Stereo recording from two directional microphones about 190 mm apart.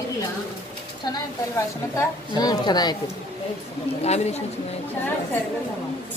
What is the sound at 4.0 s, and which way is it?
Speech, 35° left (ahead or behind).